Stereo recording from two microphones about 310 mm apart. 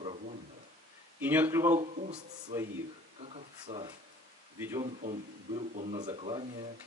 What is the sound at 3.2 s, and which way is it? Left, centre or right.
Speech, centre.